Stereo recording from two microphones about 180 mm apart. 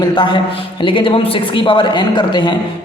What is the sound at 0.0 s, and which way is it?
A man's voice, 25° left (ahead or behind).